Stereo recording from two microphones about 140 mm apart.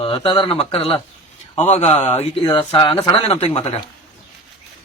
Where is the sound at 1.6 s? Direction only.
55° left (ahead or behind).